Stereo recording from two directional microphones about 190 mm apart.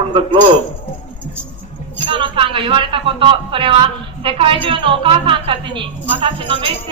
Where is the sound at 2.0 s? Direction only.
25° right (ahead or behind).